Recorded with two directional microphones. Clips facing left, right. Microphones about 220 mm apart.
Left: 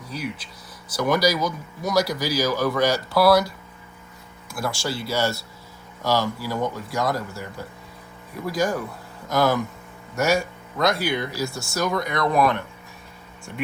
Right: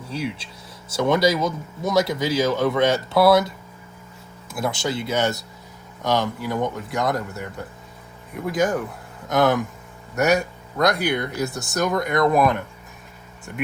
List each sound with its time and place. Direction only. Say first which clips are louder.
0.1 s speech: right 3 dB; 25° right (ahead or behind)
4.5 s speech: right 3 dB; 20° right (ahead or behind)
7.0 s a man's voice: right 1 dB; centre (ahead or behind)
11.3 s speech: right 2 dB; 20° right (ahead or behind)
11.7 s speech: right 3 dB; centre (ahead or behind)